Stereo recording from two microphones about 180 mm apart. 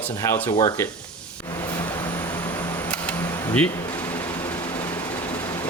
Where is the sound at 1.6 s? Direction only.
10° left (ahead or behind).